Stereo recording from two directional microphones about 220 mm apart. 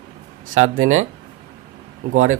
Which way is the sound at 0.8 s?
70° right (ahead or behind).